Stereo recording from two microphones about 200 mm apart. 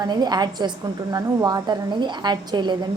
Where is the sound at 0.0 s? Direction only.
20° right (ahead or behind).